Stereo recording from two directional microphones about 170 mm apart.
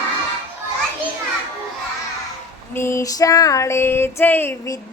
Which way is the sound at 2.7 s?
15° left (ahead or behind).